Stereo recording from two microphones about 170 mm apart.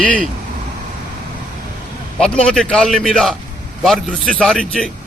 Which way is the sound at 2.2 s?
5° left (ahead or behind).